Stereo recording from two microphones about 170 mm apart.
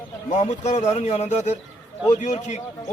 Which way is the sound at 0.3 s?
45° left (ahead or behind).